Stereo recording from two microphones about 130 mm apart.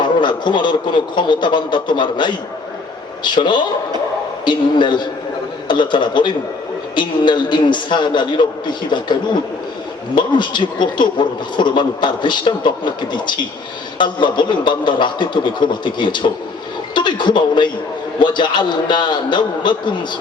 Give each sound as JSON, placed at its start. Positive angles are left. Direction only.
{"t": 0.0, "sound": "speech", "side_deg": 35}
{"t": 10.2, "sound": "speech", "side_deg": 35}